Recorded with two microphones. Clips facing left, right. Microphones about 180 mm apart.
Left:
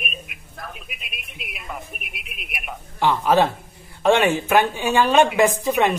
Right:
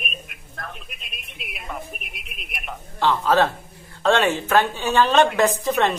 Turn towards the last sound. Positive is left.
turn(degrees=15)  # may be behind; listen again after turning